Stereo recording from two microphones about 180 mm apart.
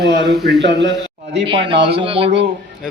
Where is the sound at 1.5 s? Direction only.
30° right (ahead or behind).